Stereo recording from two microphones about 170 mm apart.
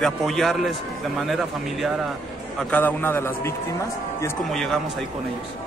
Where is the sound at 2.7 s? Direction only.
10° left (ahead or behind).